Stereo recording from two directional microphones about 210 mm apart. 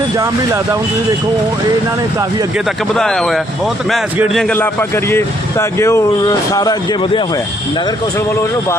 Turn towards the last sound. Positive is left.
turn(degrees=20)  # may be behind; listen again after turning